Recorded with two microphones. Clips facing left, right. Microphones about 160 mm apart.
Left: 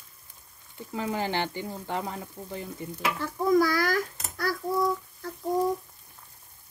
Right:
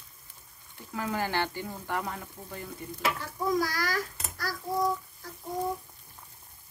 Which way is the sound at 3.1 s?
55° left (ahead or behind).